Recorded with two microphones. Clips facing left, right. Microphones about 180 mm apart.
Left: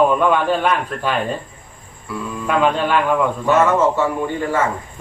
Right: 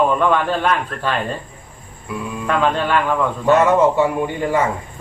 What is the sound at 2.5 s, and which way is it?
Speech, 10° left (ahead or behind).